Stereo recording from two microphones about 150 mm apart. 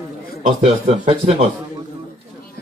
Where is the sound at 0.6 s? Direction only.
45° right (ahead or behind).